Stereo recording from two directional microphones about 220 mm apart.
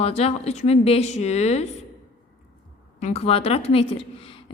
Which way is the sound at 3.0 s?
25° left (ahead or behind).